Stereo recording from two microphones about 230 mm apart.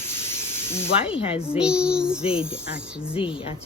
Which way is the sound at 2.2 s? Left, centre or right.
Left.